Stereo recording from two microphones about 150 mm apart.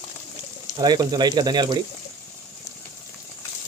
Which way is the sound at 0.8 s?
25° right (ahead or behind).